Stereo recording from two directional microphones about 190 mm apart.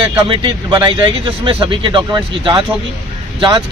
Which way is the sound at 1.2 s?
25° right (ahead or behind).